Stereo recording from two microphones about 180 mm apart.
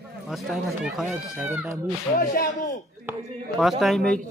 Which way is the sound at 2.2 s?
55° left (ahead or behind).